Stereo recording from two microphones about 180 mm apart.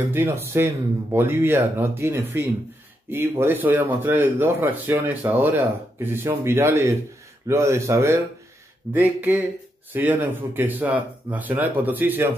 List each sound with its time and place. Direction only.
0.1 s speech: 15° right (ahead or behind)